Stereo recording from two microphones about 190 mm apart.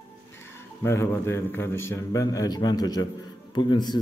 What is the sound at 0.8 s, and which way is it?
A man's voice, 15° left (ahead or behind).